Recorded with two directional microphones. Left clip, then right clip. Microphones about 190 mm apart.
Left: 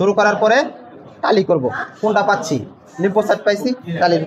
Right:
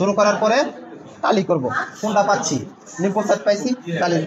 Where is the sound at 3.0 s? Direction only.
45° left (ahead or behind).